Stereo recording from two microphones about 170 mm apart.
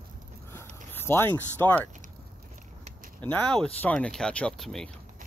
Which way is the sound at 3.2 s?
5° left (ahead or behind).